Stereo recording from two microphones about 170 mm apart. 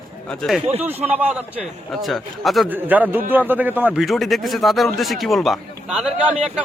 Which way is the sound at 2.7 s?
10° right (ahead or behind).